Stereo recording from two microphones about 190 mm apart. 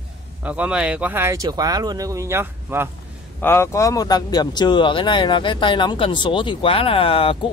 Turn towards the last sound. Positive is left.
turn(degrees=30)  # may be behind; listen again after turning